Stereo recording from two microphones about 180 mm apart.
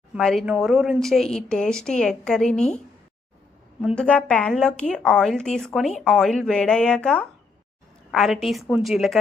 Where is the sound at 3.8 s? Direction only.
Centre (ahead or behind).